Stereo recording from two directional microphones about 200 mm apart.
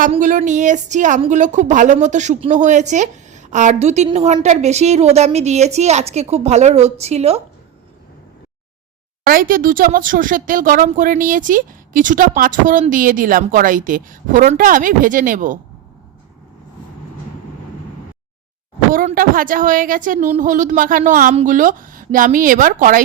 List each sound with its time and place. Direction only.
0.1 s speech: 40° right (ahead or behind)
9.2 s speech: 45° right (ahead or behind)
18.9 s speech: 45° right (ahead or behind)